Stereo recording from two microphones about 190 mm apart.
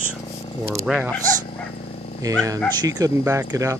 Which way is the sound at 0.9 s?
Centre (ahead or behind).